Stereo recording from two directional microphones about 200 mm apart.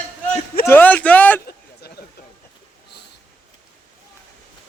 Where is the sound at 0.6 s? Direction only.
10° left (ahead or behind).